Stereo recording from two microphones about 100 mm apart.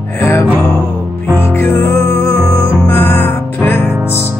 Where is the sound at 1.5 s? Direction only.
20° left (ahead or behind).